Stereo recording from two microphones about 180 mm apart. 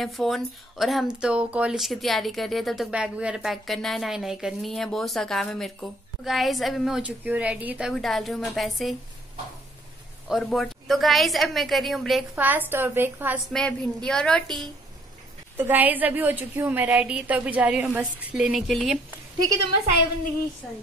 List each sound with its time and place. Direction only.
0.0 s speech: centre (ahead or behind)
10.2 s a woman's voice: centre (ahead or behind)
13.5 s speech: 5° left (ahead or behind)
15.5 s a woman's voice: 10° right (ahead or behind)